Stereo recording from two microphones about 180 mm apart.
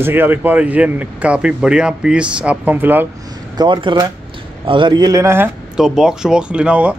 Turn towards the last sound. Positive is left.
turn(degrees=-5)  # may be behind; listen again after turning